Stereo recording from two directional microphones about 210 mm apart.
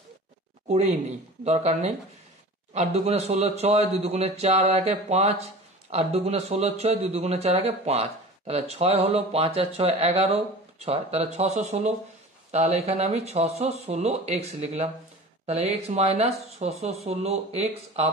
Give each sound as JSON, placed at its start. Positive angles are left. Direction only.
{"t": 0.7, "sound": "speech", "side_deg": -30}